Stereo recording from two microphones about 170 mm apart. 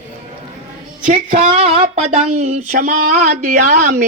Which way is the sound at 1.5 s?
35° right (ahead or behind).